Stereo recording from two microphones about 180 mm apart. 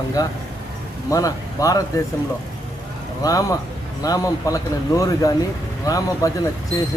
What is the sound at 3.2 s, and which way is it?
Speech, 20° left (ahead or behind).